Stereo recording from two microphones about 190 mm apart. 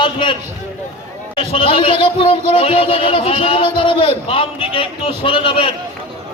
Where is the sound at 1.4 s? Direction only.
30° left (ahead or behind).